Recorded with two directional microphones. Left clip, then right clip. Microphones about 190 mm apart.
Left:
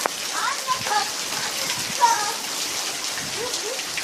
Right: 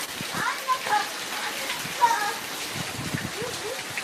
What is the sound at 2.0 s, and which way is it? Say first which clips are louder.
Rain: left 3 dB; 40° left (ahead or behind).